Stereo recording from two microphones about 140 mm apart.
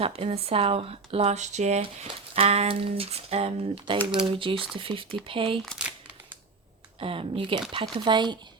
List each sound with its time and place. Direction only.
0.0 s speech: 45° right (ahead or behind)
1.8 s speech: 45° right (ahead or behind)
7.0 s speech: 40° right (ahead or behind)